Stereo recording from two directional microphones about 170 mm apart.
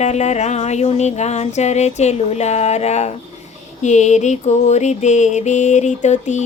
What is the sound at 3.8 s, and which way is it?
Music, 45° left (ahead or behind).